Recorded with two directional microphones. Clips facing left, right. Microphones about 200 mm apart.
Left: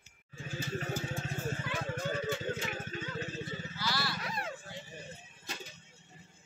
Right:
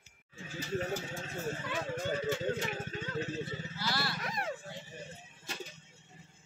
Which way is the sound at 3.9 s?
50° right (ahead or behind).